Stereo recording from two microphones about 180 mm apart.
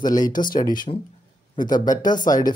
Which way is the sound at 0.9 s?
35° left (ahead or behind).